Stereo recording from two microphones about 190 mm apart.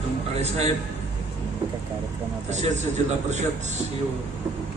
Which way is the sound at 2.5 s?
35° right (ahead or behind).